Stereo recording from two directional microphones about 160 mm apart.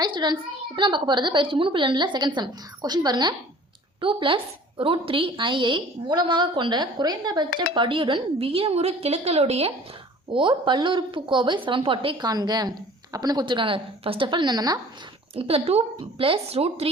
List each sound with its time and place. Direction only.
0.0 s a sound: 30° right (ahead or behind)
0.8 s a woman's voice: 30° right (ahead or behind)
15.4 s speech: 40° right (ahead or behind)